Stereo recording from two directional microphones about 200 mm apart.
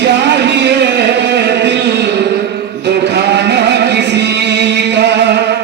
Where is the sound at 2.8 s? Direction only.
60° right (ahead or behind).